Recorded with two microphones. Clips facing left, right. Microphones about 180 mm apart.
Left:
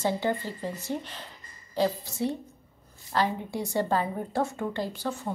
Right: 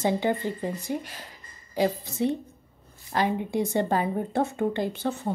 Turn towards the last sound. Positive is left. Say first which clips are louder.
# right 4 dB
turn(degrees=-20)  # may be behind; listen again after turning